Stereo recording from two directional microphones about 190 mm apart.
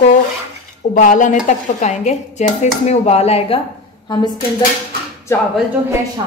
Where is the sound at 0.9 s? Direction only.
45° left (ahead or behind).